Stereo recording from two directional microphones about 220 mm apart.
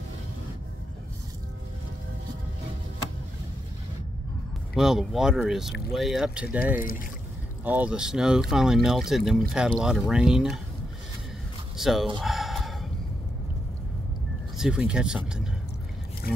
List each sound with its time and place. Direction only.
4.7 s speech: centre (ahead or behind)
6.8 s speech: 40° left (ahead or behind)
7.6 s speech: 5° right (ahead or behind)
11.7 s speech: centre (ahead or behind)
12.2 s a sound: centre (ahead or behind)
14.6 s speech: 5° right (ahead or behind)